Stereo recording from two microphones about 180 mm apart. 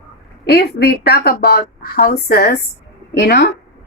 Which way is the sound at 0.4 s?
65° left (ahead or behind).